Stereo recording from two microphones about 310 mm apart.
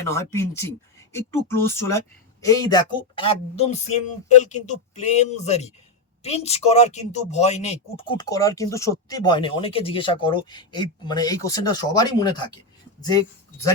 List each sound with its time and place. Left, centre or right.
0.0 s speech: centre